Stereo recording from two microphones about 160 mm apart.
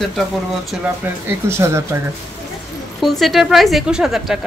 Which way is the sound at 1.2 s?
15° right (ahead or behind).